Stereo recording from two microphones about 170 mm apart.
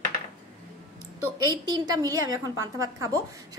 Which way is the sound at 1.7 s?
20° right (ahead or behind).